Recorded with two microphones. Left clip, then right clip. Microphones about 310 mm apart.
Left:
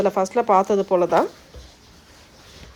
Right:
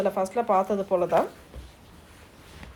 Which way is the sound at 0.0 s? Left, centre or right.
Left.